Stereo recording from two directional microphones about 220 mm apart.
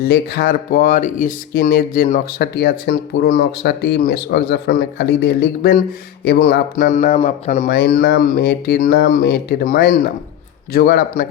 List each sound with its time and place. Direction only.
0.0 s a man's voice: 45° left (ahead or behind); by 7.7 s 30° left (ahead or behind)
7.7 s speech: 45° left (ahead or behind)